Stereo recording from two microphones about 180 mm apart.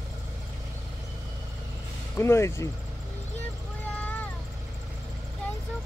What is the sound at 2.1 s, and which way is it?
Speech, 15° left (ahead or behind).